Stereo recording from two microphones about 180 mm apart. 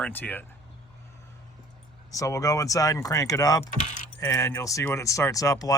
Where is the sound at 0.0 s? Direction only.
10° left (ahead or behind).